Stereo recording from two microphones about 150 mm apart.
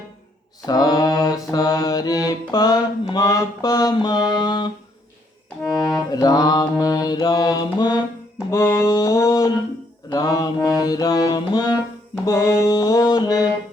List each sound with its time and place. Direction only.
0.6 s mantra: 25° left (ahead or behind)
6.1 s mantra: 25° left (ahead or behind)
12.2 s music: 20° left (ahead or behind)